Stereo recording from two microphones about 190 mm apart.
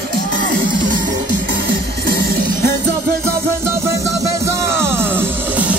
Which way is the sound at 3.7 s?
15° right (ahead or behind).